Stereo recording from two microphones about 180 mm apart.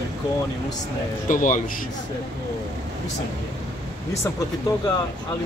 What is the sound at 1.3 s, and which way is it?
Speech, 50° left (ahead or behind).